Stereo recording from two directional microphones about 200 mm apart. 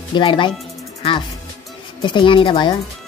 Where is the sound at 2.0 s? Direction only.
25° left (ahead or behind).